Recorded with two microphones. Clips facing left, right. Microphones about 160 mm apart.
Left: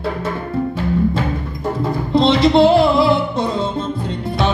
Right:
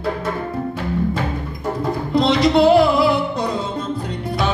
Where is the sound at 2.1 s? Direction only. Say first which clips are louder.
Left 3 dB; 25° left (ahead or behind).